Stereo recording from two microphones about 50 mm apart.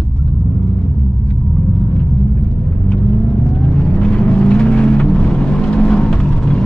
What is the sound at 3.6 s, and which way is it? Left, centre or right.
Vehicle, left.